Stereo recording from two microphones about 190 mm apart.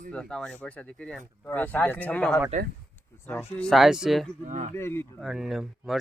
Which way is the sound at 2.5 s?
40° right (ahead or behind).